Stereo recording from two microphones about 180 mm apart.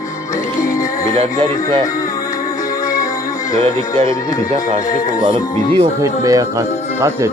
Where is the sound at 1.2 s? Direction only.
30° right (ahead or behind).